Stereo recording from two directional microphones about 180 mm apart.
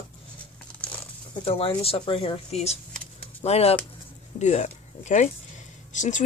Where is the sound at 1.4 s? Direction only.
30° left (ahead or behind).